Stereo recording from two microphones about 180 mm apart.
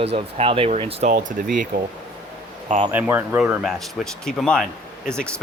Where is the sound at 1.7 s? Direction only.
55° right (ahead or behind).